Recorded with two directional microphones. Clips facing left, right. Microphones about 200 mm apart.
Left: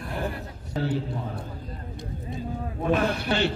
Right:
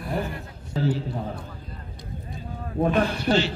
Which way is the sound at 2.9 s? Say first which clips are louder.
Even; 5° left (ahead or behind).